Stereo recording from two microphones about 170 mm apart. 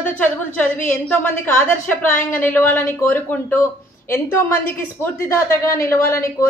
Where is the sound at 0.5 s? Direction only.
10° left (ahead or behind).